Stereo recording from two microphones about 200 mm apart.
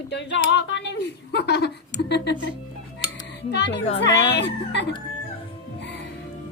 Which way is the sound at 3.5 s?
60° left (ahead or behind).